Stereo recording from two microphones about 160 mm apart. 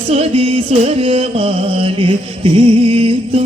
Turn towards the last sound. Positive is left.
turn(degrees=-35)  # may be behind; listen again after turning